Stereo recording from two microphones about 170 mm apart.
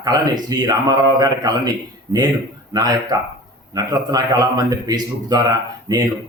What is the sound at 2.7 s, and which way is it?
A man's voice, 20° right (ahead or behind).